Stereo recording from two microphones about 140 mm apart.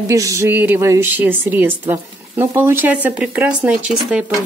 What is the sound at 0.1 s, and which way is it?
A woman's voice, 20° right (ahead or behind).